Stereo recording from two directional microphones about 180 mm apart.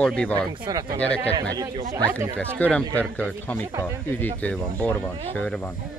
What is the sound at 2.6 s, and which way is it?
Speech, 10° left (ahead or behind).